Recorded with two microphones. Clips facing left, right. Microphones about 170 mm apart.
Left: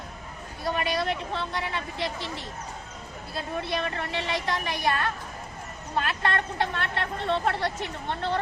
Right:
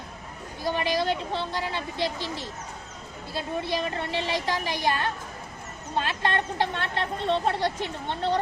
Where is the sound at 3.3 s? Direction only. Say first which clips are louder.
Right 2 dB; 30° right (ahead or behind).